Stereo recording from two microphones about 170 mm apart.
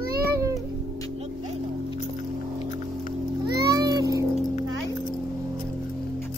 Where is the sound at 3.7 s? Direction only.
25° right (ahead or behind).